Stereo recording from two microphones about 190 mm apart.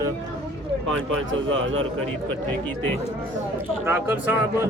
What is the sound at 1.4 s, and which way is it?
Speech, 90° right.